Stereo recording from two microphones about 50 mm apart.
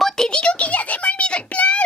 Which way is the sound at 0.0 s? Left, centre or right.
Centre.